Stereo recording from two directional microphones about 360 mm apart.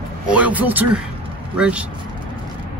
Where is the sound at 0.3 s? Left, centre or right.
Centre.